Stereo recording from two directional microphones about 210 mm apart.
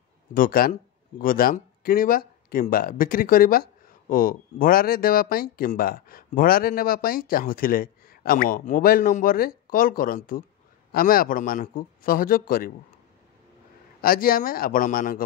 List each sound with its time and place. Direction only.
0.3 s speech: 40° left (ahead or behind)
14.0 s speech: 45° left (ahead or behind)